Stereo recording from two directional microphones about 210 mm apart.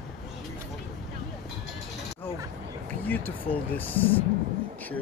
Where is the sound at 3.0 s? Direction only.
10° left (ahead or behind).